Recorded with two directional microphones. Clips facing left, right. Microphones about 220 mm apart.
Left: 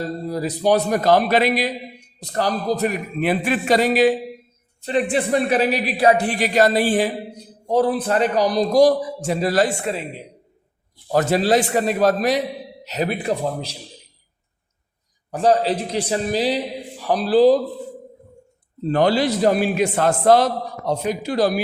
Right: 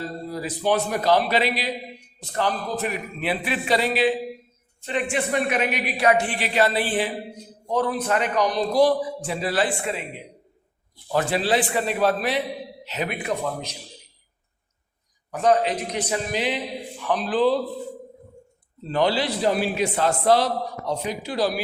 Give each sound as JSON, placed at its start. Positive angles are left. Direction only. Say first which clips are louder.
{"t": 0.3, "sound": "a man's voice", "louder": "left 5 dB", "side_deg": 40}
{"t": 11.1, "sound": "a man's voice", "louder": "left 5 dB", "side_deg": 40}
{"t": 15.3, "sound": "speech", "louder": "left 3 dB", "side_deg": 35}
{"t": 18.9, "sound": "a man's voice", "louder": "left 5 dB", "side_deg": 50}